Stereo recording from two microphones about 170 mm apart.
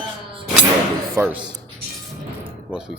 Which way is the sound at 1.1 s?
10° right (ahead or behind).